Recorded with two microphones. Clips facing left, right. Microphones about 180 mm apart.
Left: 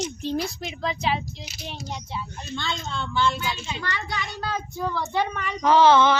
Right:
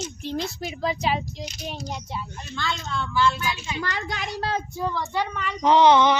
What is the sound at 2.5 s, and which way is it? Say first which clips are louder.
Speech: right 1 dB; 25° left (ahead or behind).